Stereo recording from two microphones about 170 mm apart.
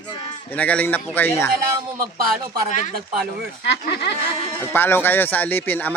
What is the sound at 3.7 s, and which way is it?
Speech, 80° left.